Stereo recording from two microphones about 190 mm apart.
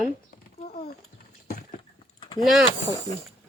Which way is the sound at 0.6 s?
35° left (ahead or behind).